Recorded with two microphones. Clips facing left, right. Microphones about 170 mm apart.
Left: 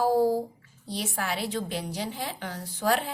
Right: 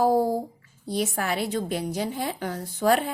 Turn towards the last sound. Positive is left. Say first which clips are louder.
# right 4 dB
turn(degrees=-50)  # may be behind; listen again after turning